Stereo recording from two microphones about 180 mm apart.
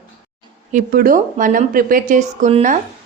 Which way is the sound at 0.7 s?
55° right (ahead or behind).